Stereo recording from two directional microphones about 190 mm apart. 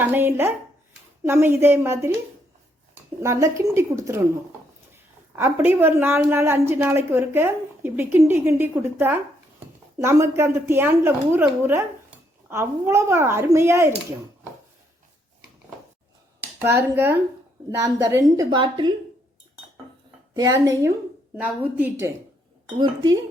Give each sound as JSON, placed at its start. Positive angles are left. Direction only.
{"t": 0.0, "sound": "a woman's voice", "side_deg": -10}
{"t": 3.2, "sound": "a woman's voice", "side_deg": -15}
{"t": 5.4, "sound": "a woman's voice", "side_deg": -10}
{"t": 16.6, "sound": "a woman's voice", "side_deg": -10}
{"t": 20.3, "sound": "a woman's voice", "side_deg": -20}